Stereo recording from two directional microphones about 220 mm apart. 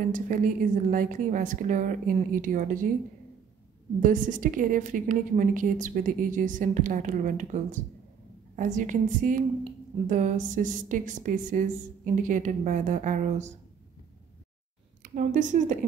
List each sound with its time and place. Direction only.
0.1 s a woman's voice: 35° right (ahead or behind)
4.0 s a woman's voice: 35° right (ahead or behind)
15.0 s a woman's voice: 35° right (ahead or behind)